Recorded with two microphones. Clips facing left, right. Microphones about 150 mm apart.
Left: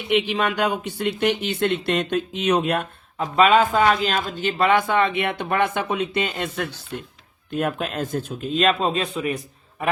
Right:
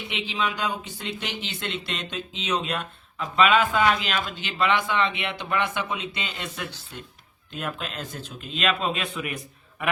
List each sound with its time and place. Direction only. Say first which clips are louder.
0.1 s a man's voice: left 9 dB; 55° left (ahead or behind); by 9.4 s 35° left (ahead or behind)